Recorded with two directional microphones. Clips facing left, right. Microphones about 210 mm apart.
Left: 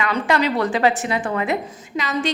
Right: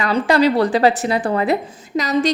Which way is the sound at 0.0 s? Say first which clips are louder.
Right 5 dB; 35° right (ahead or behind).